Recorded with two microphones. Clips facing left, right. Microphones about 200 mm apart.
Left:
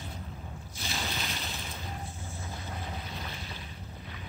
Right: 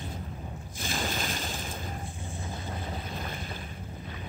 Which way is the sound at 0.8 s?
50° right (ahead or behind).